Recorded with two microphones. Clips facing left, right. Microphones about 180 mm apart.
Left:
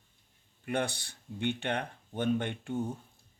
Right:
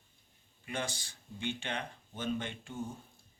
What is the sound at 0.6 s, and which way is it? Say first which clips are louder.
Speech: left 6 dB; 60° left (ahead or behind).